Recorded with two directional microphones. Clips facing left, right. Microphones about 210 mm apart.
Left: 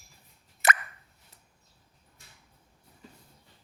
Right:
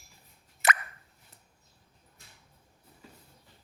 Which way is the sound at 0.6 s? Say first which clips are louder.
Left 1 dB; 45° left (ahead or behind).